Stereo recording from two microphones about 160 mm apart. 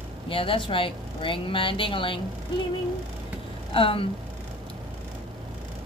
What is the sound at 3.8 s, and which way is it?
Speech, 35° left (ahead or behind).